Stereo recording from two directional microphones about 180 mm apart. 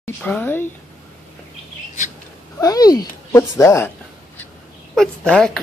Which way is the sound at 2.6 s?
20° left (ahead or behind).